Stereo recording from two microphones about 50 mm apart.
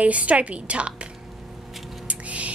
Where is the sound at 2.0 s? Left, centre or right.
Right.